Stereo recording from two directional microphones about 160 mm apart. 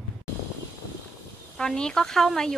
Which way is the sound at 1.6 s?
5° left (ahead or behind).